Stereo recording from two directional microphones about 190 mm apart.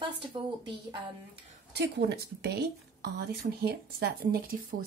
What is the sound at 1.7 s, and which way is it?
Speech, 60° right (ahead or behind).